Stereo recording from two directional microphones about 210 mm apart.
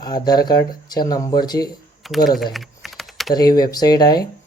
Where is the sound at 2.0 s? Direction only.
Centre (ahead or behind).